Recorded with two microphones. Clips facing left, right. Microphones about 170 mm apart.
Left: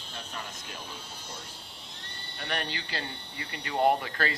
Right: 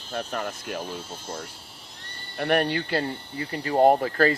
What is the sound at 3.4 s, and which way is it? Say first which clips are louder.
Speech: right 7 dB; 35° right (ahead or behind).